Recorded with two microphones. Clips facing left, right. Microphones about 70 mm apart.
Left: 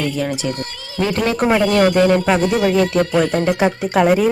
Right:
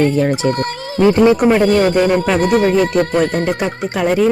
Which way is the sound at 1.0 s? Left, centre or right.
Right.